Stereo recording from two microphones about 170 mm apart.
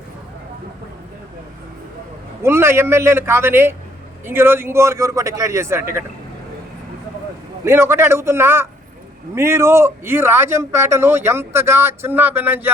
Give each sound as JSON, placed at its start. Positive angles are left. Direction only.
{"t": 2.4, "sound": "speech", "side_deg": -15}
{"t": 7.6, "sound": "speech", "side_deg": -15}